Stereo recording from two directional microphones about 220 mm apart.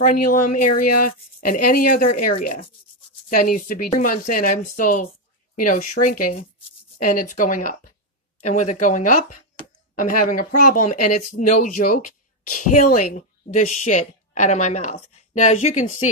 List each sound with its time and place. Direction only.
0.0 s speech: 35° left (ahead or behind)